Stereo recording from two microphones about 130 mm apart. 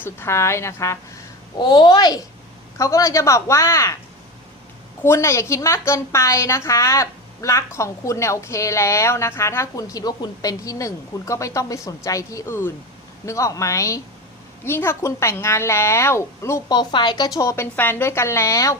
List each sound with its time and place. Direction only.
0.0 s a woman's voice: 20° left (ahead or behind)
1.5 s a child's voice: 35° left (ahead or behind)
5.0 s a woman's voice: 20° left (ahead or behind)
16.7 s a woman's voice: 35° left (ahead or behind)